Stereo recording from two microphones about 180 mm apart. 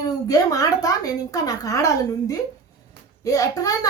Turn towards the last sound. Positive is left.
turn(degrees=20)  # may be behind; listen again after turning